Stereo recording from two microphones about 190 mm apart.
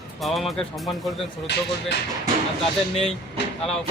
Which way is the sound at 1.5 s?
65° left (ahead or behind).